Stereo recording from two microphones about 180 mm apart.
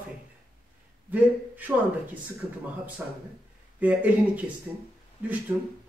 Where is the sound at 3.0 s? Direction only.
10° right (ahead or behind).